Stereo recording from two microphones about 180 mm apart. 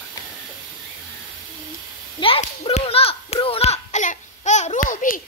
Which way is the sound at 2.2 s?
30° left (ahead or behind).